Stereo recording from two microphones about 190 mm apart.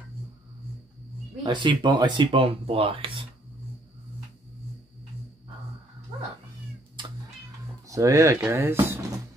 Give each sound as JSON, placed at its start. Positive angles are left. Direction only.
{"t": 1.4, "sound": "speech", "side_deg": -25}
{"t": 7.9, "sound": "speech", "side_deg": -15}